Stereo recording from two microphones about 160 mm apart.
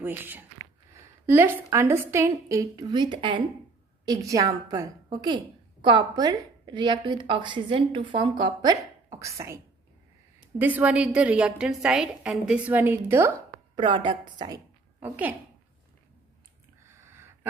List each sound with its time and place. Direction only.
0.0 s a woman's voice: 10° right (ahead or behind)
10.6 s a woman's voice: 10° right (ahead or behind)
13.7 s a woman's voice: 30° right (ahead or behind)
15.0 s a woman's voice: 10° right (ahead or behind)
16.8 s a sound: 15° right (ahead or behind)